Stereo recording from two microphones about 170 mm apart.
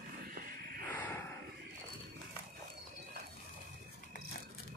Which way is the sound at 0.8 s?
10° left (ahead or behind).